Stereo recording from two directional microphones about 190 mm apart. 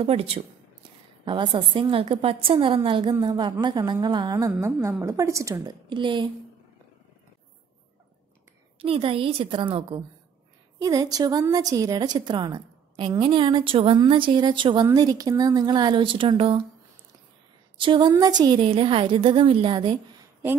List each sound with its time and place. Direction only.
0.0 s a woman's voice: 30° right (ahead or behind)
8.7 s a woman's voice: 30° right (ahead or behind)
17.7 s a woman's voice: 25° right (ahead or behind)